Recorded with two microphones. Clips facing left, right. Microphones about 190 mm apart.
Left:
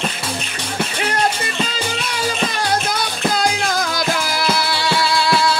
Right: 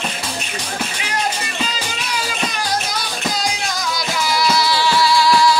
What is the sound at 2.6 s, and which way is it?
Music, 55° left (ahead or behind).